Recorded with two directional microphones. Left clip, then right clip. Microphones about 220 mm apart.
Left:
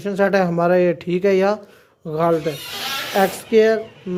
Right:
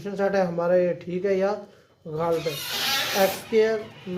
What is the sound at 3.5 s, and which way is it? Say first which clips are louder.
Speech: left 9 dB; 50° left (ahead or behind).